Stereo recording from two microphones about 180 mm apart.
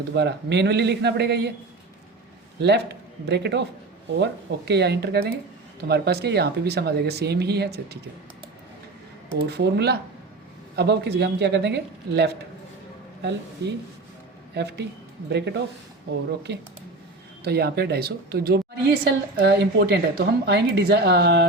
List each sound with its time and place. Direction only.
0.1 s a woman's voice: 70° right (ahead or behind)
2.6 s a woman's voice: 70° right (ahead or behind)
9.5 s a woman's voice: 65° right (ahead or behind)
14.5 s a woman's voice: 70° right (ahead or behind)